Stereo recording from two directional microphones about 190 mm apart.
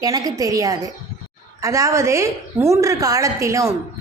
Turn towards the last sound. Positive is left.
turn(degrees=-15)  # may be behind; listen again after turning